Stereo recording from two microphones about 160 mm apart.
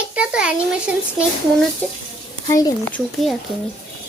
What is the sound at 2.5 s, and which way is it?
Speech, 20° left (ahead or behind).